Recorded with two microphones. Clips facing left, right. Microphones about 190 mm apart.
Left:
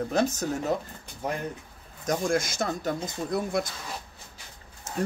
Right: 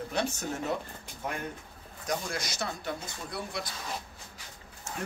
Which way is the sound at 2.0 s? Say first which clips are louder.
Left 8 dB; 45° left (ahead or behind).